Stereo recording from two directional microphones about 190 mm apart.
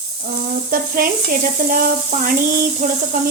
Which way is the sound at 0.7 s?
50° right (ahead or behind).